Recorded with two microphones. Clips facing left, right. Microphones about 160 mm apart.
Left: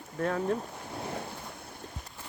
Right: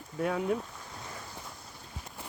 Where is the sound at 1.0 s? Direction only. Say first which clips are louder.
Left 9 dB; 60° left (ahead or behind).